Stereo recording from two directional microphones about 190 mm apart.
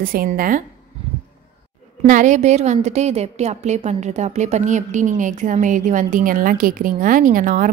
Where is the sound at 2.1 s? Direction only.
40° right (ahead or behind).